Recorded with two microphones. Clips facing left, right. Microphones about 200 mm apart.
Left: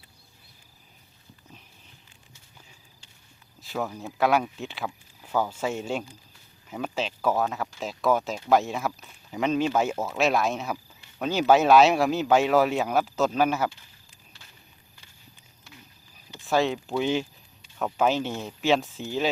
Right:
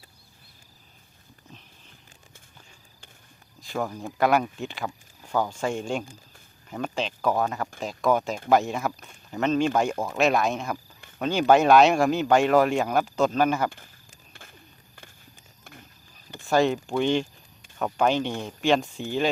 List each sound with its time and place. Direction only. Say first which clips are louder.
3.6 s speech: right 1 dB; 5° left (ahead or behind)
13.7 s speech: right 1 dB; 50° right (ahead or behind)
15.6 s run: right 3 dB; 55° right (ahead or behind)
16.5 s speech: right 2 dB; centre (ahead or behind)